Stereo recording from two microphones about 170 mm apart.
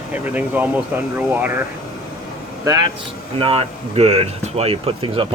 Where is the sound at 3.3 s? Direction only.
35° right (ahead or behind).